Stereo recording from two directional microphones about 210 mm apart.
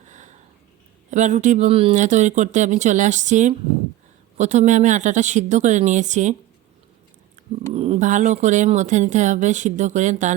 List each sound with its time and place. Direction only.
0.0 s sniff: 35° right (ahead or behind)
1.1 s speech: 35° right (ahead or behind)
7.7 s speech: 25° right (ahead or behind)